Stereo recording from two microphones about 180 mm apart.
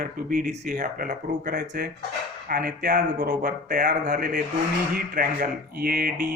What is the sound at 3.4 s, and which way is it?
Speech, 45° right (ahead or behind).